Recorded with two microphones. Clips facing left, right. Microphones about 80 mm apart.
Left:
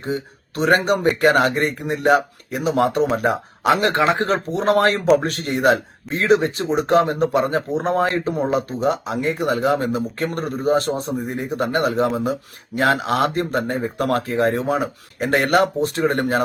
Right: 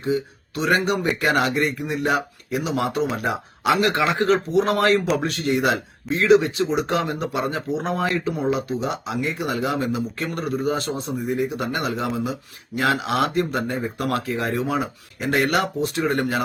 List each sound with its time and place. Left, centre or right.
0.0 s speech: left